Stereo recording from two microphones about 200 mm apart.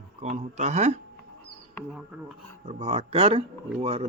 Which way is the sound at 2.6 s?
30° right (ahead or behind).